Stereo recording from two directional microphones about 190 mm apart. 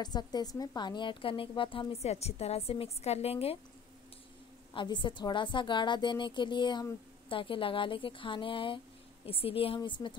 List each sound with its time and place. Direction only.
0.0 s a woman's voice: 20° left (ahead or behind)
4.7 s a woman's voice: 25° left (ahead or behind)